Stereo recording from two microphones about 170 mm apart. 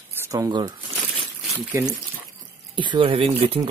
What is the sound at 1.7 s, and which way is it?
Speech, 15° right (ahead or behind).